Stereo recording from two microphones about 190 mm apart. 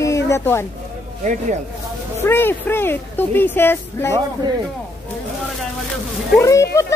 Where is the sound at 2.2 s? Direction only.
10° left (ahead or behind).